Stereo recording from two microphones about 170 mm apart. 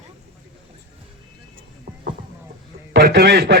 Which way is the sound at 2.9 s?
60° right (ahead or behind).